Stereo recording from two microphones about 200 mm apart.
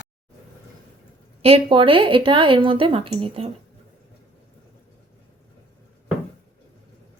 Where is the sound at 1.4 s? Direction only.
30° right (ahead or behind).